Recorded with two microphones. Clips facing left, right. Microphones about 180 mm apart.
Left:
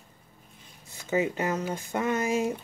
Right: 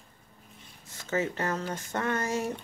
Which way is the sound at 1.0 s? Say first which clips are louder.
Left 3 dB; 15° left (ahead or behind).